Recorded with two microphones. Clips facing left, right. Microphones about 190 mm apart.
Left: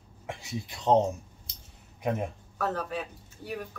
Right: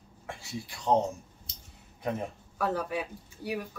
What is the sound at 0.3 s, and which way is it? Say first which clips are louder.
Speech: left 2 dB; 20° left (ahead or behind).